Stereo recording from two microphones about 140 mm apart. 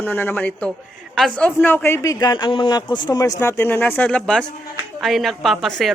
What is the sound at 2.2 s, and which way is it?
Speech, 30° left (ahead or behind).